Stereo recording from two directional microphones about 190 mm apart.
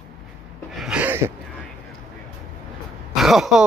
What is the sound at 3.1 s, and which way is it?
Speech, centre (ahead or behind).